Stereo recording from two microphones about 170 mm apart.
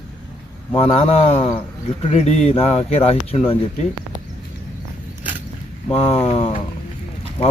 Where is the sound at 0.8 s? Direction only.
35° left (ahead or behind).